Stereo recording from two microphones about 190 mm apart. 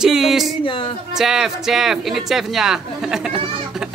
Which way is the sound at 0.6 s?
25° left (ahead or behind).